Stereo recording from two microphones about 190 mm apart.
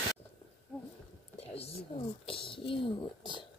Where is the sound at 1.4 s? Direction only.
30° left (ahead or behind).